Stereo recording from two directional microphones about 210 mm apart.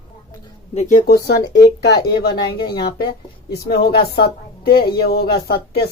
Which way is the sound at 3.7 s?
50° left (ahead or behind).